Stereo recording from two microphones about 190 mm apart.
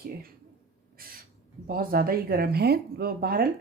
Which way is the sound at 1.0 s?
50° right (ahead or behind).